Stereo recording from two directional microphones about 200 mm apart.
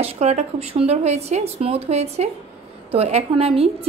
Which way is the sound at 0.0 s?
30° right (ahead or behind).